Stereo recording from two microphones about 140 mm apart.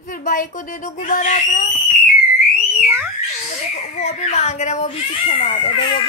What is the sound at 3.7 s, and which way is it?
Speech, 55° left (ahead or behind).